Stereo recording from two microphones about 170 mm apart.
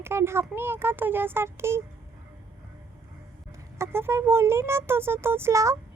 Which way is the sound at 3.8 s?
15° right (ahead or behind).